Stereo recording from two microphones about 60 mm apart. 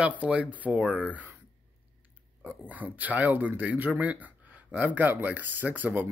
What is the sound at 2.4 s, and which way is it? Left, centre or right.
Speech, right.